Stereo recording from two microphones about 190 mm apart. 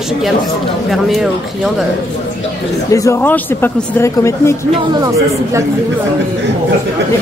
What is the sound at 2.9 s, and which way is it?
Speech, 15° left (ahead or behind).